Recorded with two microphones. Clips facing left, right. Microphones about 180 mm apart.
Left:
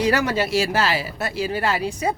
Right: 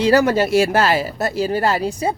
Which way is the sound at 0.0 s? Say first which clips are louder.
Right 6 dB; 40° right (ahead or behind).